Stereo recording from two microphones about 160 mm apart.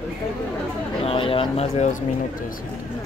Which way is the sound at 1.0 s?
35° left (ahead or behind).